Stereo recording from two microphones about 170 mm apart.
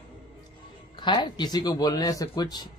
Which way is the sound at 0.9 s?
30° left (ahead or behind).